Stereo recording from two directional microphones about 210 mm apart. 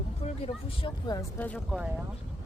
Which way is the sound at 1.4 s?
Centre (ahead or behind).